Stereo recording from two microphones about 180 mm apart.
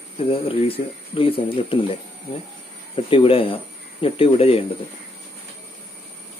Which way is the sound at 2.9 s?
30° left (ahead or behind).